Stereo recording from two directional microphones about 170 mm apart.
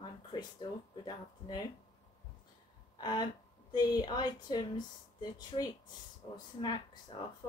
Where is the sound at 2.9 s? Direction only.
25° left (ahead or behind).